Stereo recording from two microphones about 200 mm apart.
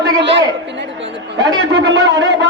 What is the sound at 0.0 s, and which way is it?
A woman's voice, 60° right (ahead or behind).